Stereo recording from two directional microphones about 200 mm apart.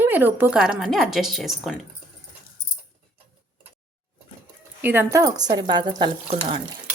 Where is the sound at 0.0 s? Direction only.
10° right (ahead or behind).